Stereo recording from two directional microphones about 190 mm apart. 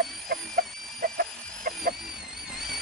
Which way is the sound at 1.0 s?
50° right (ahead or behind).